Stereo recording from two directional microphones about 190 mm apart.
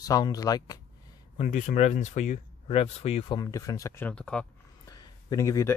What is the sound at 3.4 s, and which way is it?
Speech, 20° left (ahead or behind).